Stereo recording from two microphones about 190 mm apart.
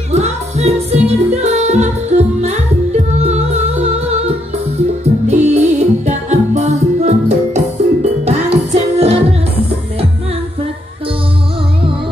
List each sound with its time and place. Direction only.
0.1 s music: 35° right (ahead or behind)
5.3 s music: 35° right (ahead or behind)